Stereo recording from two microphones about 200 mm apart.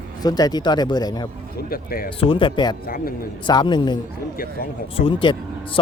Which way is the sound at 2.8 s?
45° left (ahead or behind).